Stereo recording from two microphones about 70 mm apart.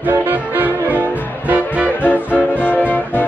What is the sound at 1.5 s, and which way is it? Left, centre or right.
Music, right.